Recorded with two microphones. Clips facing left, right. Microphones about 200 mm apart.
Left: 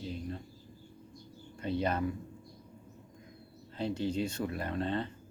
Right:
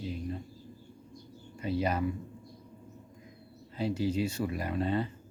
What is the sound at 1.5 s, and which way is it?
Speech, 10° right (ahead or behind).